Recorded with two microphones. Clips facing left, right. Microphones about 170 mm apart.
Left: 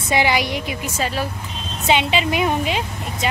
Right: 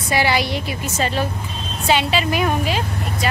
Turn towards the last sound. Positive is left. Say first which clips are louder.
# right 1 dB
turn(degrees=20)  # may be behind; listen again after turning